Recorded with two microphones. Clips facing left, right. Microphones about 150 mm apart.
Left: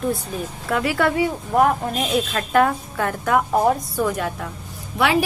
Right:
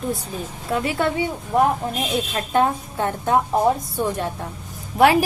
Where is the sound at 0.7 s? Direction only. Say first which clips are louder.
Left 1 dB; 25° right (ahead or behind).